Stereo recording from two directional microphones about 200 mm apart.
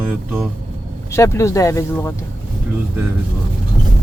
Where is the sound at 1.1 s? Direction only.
15° left (ahead or behind).